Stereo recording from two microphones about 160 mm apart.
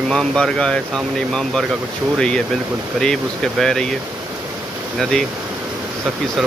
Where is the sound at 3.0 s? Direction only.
5° left (ahead or behind).